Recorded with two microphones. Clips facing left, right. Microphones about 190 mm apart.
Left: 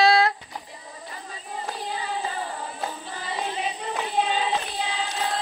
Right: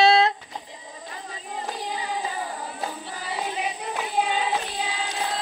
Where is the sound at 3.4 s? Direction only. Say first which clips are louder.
Even; 10° right (ahead or behind).